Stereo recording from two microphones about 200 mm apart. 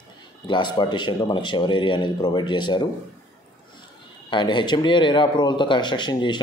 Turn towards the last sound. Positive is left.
turn(degrees=25)  # may be behind; listen again after turning